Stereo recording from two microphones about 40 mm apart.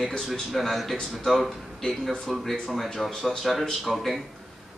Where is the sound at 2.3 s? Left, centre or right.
Centre.